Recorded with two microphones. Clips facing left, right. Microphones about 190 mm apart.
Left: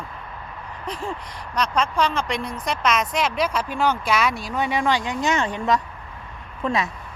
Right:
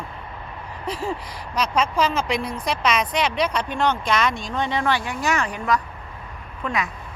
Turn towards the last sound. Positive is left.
turn(degrees=25)  # may be behind; listen again after turning